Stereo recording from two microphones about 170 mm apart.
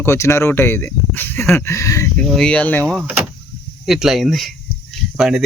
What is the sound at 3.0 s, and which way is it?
Speech, 10° right (ahead or behind).